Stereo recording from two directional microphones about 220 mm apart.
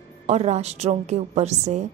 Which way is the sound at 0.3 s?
30° right (ahead or behind).